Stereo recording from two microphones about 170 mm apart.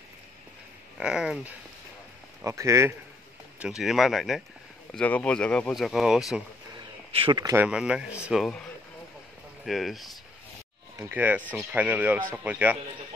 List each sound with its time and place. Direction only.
0.9 s speech: 5° right (ahead or behind)
2.4 s speech: 15° right (ahead or behind)
3.5 s speech: 5° right (ahead or behind)
7.1 s speech: 30° right (ahead or behind)
7.5 s speech: 5° right (ahead or behind)
9.7 s speech: centre (ahead or behind)
11.0 s speech: 10° right (ahead or behind)